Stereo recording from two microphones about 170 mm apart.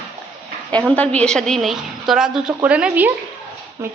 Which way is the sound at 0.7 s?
5° left (ahead or behind).